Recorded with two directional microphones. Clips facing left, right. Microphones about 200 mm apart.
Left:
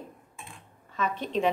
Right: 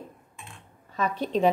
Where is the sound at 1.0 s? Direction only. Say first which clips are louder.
Right 3 dB; 35° right (ahead or behind).